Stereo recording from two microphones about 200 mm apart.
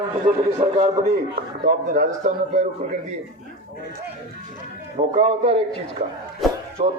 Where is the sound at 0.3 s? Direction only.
30° right (ahead or behind).